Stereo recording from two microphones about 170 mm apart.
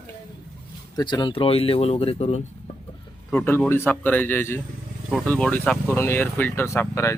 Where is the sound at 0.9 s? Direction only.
25° left (ahead or behind).